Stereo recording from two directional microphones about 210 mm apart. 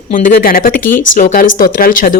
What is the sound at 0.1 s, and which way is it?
A woman's voice, 45° left (ahead or behind).